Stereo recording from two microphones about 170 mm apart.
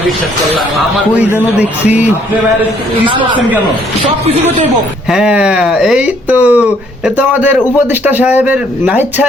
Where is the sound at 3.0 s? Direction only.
30° right (ahead or behind).